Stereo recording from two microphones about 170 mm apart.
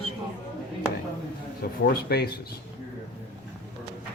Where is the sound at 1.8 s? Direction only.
65° left (ahead or behind).